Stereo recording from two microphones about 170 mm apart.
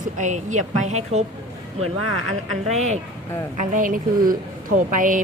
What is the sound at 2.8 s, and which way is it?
Speech, 40° right (ahead or behind).